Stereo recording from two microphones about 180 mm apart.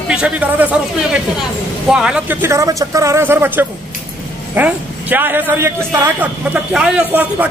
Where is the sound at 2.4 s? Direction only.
20° right (ahead or behind).